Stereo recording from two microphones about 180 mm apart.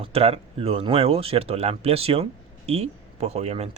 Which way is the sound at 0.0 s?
35° right (ahead or behind).